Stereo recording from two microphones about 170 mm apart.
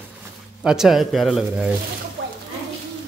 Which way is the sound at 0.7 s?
Centre (ahead or behind).